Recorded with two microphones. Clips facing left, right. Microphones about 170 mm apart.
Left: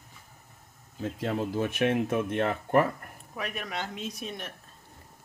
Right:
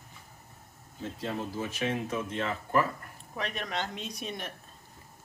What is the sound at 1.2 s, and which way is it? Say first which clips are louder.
Speech: left 5 dB; 65° left (ahead or behind).